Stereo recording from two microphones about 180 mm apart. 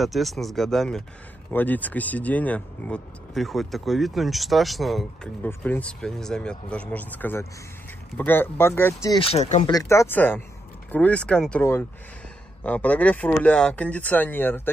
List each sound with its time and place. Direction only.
0.0 s speech: centre (ahead or behind)
9.2 s speech: 35° left (ahead or behind)
9.7 s speech: 20° left (ahead or behind)